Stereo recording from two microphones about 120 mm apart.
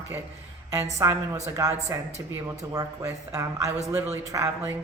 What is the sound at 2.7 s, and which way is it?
Speech, 30° right (ahead or behind).